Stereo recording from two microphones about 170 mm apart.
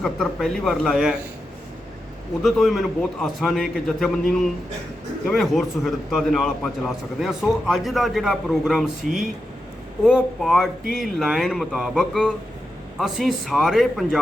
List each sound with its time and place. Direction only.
0.0 s speech: centre (ahead or behind)
2.4 s speech: centre (ahead or behind)
10.0 s speech: 5° right (ahead or behind)